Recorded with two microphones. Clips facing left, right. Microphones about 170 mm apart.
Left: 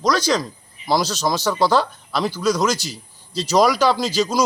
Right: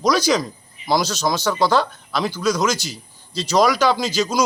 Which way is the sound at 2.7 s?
35° left (ahead or behind).